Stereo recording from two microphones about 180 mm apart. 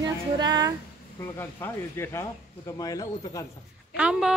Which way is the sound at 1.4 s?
15° left (ahead or behind).